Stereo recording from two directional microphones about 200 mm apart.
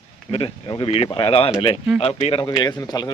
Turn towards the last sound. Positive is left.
turn(degrees=20)  # may be behind; listen again after turning